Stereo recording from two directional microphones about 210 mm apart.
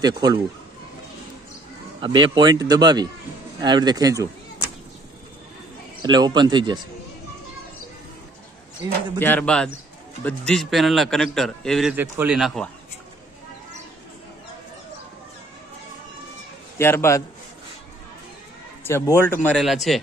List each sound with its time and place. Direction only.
0.0 s a man's voice: 20° right (ahead or behind)
2.0 s a man's voice: 20° right (ahead or behind)
6.0 s a man's voice: 20° right (ahead or behind)
9.2 s a man's voice: 10° left (ahead or behind)
11.9 s a man's voice: 10° right (ahead or behind)
16.7 s a man's voice: 10° left (ahead or behind)
18.9 s speech: 10° left (ahead or behind)